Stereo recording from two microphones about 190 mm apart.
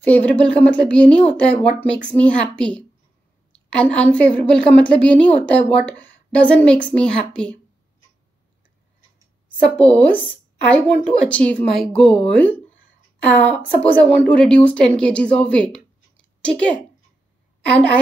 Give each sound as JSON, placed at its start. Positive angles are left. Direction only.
{"t": 0.0, "sound": "a woman's voice", "side_deg": 5}
{"t": 9.8, "sound": "a woman's voice", "side_deg": 5}